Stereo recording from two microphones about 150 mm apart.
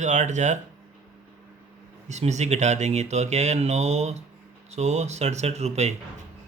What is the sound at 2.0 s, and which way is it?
Speech, 50° right (ahead or behind).